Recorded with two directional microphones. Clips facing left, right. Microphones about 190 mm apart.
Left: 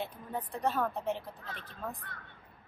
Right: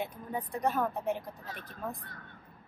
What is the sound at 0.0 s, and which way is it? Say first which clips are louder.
A woman's voice: right 2 dB; 15° right (ahead or behind).